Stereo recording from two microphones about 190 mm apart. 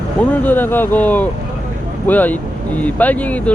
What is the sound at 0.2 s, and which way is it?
Speech, 10° left (ahead or behind).